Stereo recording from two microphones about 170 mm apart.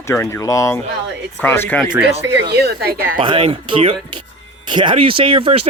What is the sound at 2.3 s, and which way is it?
Speech, 70° right (ahead or behind).